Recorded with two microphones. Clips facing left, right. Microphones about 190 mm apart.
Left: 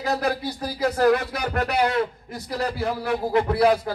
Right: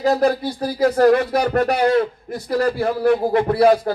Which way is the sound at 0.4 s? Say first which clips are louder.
Right 6 dB; 55° right (ahead or behind).